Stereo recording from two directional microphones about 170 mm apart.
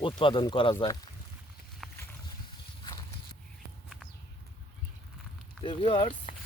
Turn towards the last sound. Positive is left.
turn(degrees=30)  # may be behind; listen again after turning